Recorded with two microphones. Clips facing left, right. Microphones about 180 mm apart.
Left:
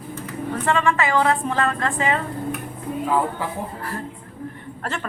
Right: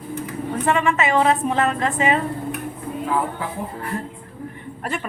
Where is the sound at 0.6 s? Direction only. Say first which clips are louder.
Right 1 dB; 20° right (ahead or behind).